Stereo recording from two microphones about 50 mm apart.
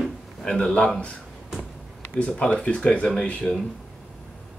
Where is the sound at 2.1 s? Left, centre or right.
Left.